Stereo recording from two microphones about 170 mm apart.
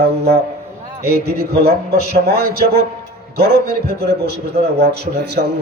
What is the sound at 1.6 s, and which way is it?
A man's voice, 70° right (ahead or behind).